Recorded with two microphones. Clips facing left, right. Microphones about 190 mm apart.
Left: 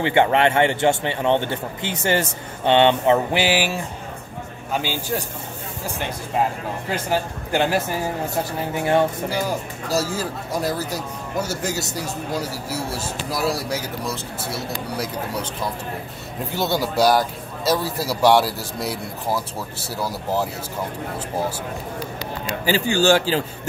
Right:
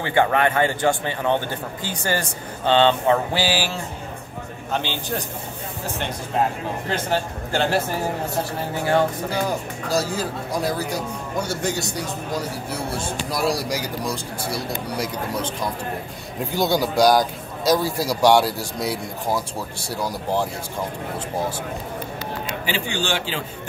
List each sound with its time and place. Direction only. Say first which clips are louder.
0.0 s a man's voice: left 2 dB; 25° left (ahead or behind)
4.7 s a man's voice: left 2 dB; 5° left (ahead or behind)
6.9 s a man's voice: left 1 dB; 10° left (ahead or behind)
9.3 s speech: even; 5° left (ahead or behind)
15.0 s a man's voice: right 1 dB; 10° left (ahead or behind)
16.5 s speech: right 2 dB; centre (ahead or behind)
22.7 s a man's voice: left 9 dB; 40° left (ahead or behind)